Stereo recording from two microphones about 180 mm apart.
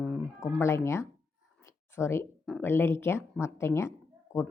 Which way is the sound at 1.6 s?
15° left (ahead or behind).